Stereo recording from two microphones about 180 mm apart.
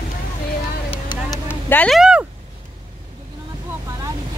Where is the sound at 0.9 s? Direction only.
25° left (ahead or behind).